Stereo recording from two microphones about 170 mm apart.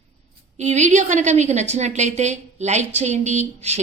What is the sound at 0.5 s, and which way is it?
A woman's voice, 45° right (ahead or behind).